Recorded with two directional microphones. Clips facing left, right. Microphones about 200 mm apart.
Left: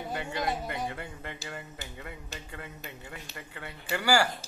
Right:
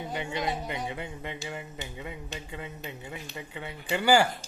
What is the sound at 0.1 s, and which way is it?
Speech, 20° right (ahead or behind).